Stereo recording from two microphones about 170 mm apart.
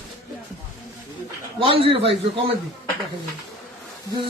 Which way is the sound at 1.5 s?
30° right (ahead or behind).